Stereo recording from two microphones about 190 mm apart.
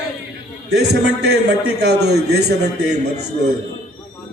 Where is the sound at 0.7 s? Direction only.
60° right (ahead or behind).